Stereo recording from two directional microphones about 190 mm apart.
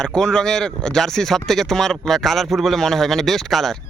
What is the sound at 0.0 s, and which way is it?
Speech, 5° left (ahead or behind).